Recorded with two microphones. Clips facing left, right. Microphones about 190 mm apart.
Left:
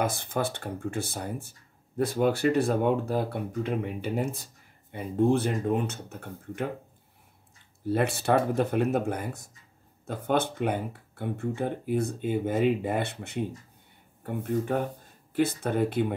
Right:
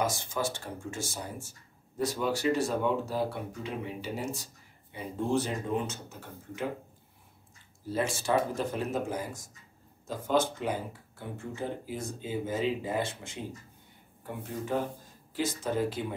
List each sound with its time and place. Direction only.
0.0 s speech: 55° left (ahead or behind)
7.9 s speech: 60° left (ahead or behind)